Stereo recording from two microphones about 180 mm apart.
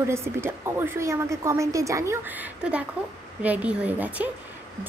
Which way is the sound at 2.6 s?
5° right (ahead or behind).